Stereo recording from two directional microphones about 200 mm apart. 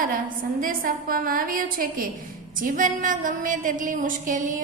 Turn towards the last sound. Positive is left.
turn(degrees=-40)  # may be behind; listen again after turning